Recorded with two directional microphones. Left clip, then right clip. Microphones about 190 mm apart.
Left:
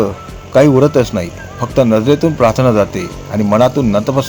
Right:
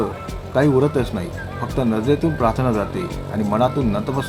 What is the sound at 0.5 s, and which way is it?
A man's voice, 50° left (ahead or behind).